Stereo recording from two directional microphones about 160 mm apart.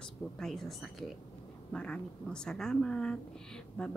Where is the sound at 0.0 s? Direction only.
Centre (ahead or behind).